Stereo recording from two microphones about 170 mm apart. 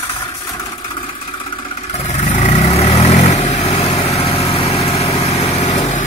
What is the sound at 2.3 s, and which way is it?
Vehicle, 40° left (ahead or behind).